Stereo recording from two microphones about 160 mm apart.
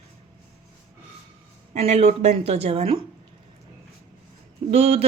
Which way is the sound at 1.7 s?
40° right (ahead or behind).